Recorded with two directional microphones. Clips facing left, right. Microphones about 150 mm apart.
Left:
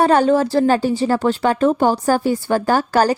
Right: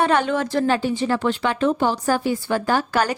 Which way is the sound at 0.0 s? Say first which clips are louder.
Left 6 dB; 40° left (ahead or behind).